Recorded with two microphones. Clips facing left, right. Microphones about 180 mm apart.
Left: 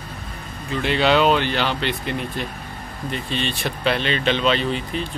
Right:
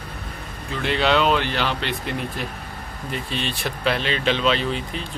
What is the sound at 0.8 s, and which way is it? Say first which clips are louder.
Speech: left 2 dB; centre (ahead or behind).